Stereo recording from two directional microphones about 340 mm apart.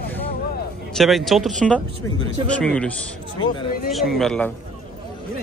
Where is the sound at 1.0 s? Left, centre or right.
Centre.